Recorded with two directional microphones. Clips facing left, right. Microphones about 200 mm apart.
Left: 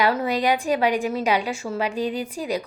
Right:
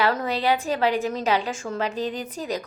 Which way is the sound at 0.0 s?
10° left (ahead or behind).